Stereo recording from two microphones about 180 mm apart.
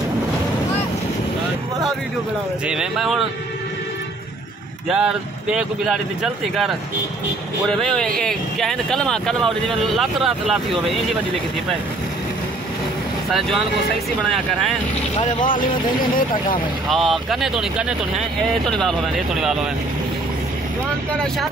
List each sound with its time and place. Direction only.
2.6 s speech: 5° right (ahead or behind)
4.8 s speech: 5° right (ahead or behind)
7.7 s speech: 5° left (ahead or behind)
15.4 s speech: 50° left (ahead or behind)
16.9 s speech: centre (ahead or behind)